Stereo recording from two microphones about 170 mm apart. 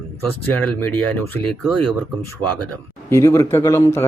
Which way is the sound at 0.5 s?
10° left (ahead or behind).